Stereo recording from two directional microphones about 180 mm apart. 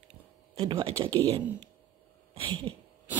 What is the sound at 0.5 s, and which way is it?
Speech, 30° right (ahead or behind).